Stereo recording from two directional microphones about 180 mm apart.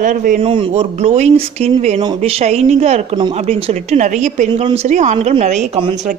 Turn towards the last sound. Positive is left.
turn(degrees=-40)  # may be behind; listen again after turning